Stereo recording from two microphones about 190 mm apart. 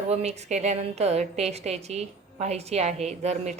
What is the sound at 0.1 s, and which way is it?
A woman's voice, 35° right (ahead or behind).